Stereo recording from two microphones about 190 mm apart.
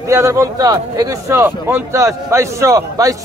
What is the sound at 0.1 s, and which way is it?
A man's voice, 15° right (ahead or behind).